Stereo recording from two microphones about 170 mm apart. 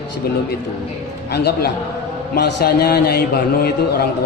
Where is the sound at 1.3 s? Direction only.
75° left (ahead or behind).